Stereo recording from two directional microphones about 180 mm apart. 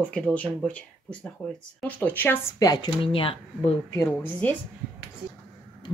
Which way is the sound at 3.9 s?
15° left (ahead or behind).